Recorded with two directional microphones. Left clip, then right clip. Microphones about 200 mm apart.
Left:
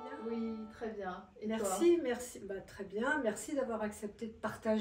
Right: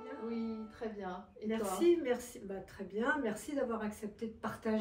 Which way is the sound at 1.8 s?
15° left (ahead or behind).